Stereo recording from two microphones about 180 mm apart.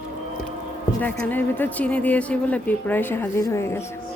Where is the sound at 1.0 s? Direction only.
10° left (ahead or behind).